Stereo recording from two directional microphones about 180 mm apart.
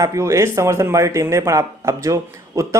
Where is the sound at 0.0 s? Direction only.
15° right (ahead or behind).